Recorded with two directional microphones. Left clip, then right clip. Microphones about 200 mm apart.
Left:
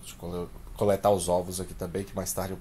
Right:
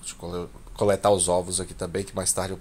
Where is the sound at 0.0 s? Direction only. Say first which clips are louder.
Right 3 dB; 10° right (ahead or behind).